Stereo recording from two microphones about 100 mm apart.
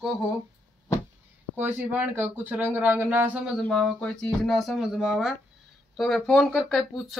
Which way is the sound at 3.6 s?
10° left (ahead or behind).